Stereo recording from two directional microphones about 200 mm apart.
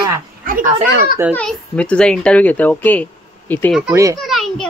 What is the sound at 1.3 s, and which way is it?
A child's voice, 5° left (ahead or behind).